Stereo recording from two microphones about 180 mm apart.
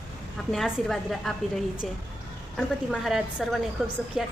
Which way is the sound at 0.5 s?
Centre (ahead or behind).